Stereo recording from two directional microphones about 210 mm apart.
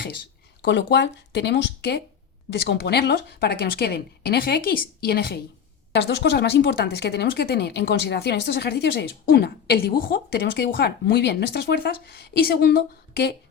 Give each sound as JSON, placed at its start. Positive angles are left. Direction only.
{"t": 0.6, "sound": "speech", "side_deg": 55}